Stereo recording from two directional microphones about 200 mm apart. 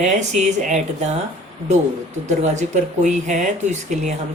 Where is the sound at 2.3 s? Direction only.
35° right (ahead or behind).